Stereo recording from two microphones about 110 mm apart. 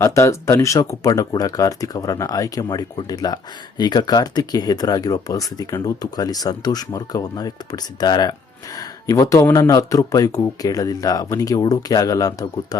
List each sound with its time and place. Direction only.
0.0 s speech: 30° left (ahead or behind)